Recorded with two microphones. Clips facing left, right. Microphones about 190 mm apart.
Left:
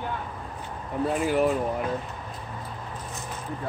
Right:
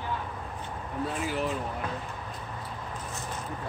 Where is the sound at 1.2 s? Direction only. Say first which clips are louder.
Left 10 dB; 55° left (ahead or behind).